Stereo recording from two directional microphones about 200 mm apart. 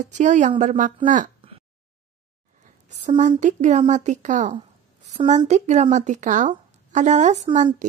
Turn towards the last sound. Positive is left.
turn(degrees=-35)  # may be behind; listen again after turning